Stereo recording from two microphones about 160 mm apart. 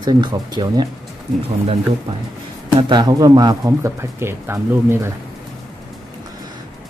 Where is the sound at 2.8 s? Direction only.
30° right (ahead or behind).